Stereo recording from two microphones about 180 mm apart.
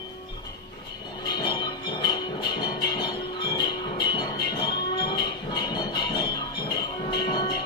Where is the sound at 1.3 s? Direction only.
25° left (ahead or behind).